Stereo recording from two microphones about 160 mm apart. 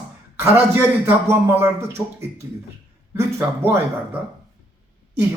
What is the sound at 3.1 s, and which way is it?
Speech, 15° right (ahead or behind).